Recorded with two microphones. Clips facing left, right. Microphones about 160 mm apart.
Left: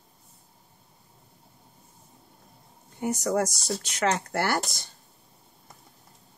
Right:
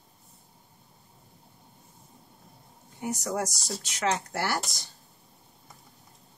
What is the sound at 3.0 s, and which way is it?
Speech, centre (ahead or behind).